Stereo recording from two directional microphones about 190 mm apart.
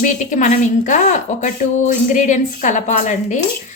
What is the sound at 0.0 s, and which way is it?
A woman's voice, 40° left (ahead or behind).